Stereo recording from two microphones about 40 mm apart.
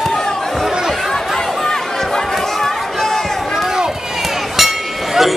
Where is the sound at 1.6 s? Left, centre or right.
Centre.